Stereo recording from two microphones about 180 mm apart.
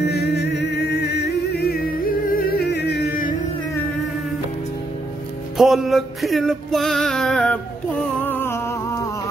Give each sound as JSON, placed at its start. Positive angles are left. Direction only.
{"t": 0.0, "sound": "music", "side_deg": 70}
{"t": 5.6, "sound": "music", "side_deg": 0}
{"t": 8.0, "sound": "humming", "side_deg": 10}